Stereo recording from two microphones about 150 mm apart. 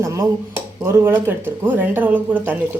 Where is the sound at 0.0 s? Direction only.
20° right (ahead or behind).